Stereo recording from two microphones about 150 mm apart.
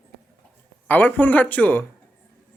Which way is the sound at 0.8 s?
10° left (ahead or behind).